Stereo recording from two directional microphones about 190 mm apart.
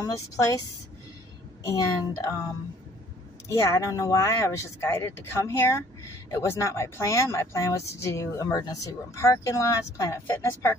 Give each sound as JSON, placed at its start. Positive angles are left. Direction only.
{"t": 0.0, "sound": "a woman's voice", "side_deg": 20}
{"t": 1.7, "sound": "speech", "side_deg": 15}
{"t": 3.4, "sound": "speech", "side_deg": 15}